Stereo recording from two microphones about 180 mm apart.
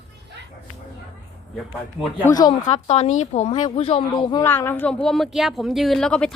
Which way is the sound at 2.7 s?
35° left (ahead or behind).